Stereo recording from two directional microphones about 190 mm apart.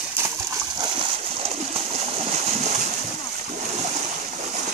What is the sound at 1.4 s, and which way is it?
Splash, 35° right (ahead or behind).